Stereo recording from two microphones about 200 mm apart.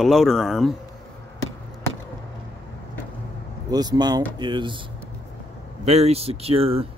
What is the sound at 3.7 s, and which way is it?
Speech, 20° right (ahead or behind).